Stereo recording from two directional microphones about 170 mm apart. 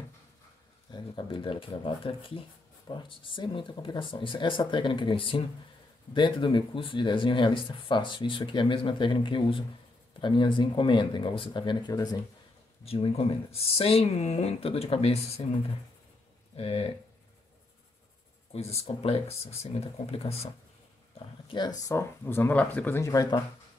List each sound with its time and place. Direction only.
0.9 s speech: 30° left (ahead or behind)
12.8 s speech: 35° left (ahead or behind)
16.5 s speech: 35° left (ahead or behind)
18.5 s speech: 35° left (ahead or behind)
21.5 s speech: 25° left (ahead or behind)